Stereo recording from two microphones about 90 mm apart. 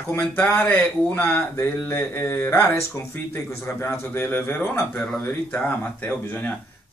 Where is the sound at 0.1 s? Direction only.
20° left (ahead or behind).